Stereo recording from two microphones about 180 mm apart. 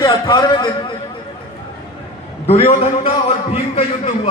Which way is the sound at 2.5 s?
30° left (ahead or behind).